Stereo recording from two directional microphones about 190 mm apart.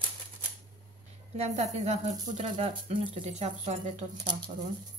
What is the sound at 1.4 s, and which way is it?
Speech, 35° right (ahead or behind).